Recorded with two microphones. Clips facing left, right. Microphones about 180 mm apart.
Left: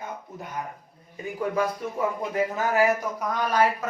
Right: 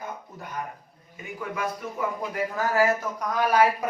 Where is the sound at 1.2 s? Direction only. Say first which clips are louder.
Left 5 dB; 35° left (ahead or behind).